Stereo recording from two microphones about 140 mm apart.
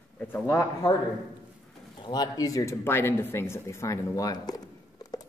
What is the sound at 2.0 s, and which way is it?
Speech, 25° left (ahead or behind).